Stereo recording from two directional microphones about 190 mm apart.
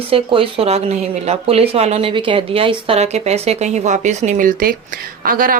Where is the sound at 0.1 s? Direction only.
30° right (ahead or behind).